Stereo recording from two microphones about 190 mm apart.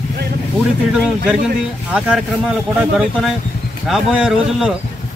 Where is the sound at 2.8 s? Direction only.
5° right (ahead or behind).